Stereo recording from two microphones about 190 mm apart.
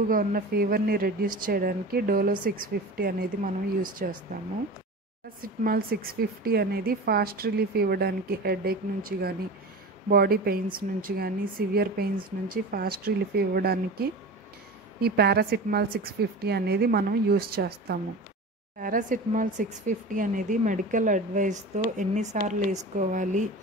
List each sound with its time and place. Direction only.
0.1 s speech: 50° right (ahead or behind)
5.4 s a woman's voice: 50° right (ahead or behind)
18.8 s speech: 45° right (ahead or behind)